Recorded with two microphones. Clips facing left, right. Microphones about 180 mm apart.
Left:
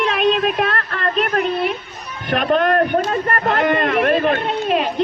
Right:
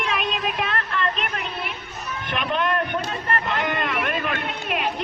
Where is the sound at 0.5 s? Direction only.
45° left (ahead or behind); by 4.9 s 30° left (ahead or behind).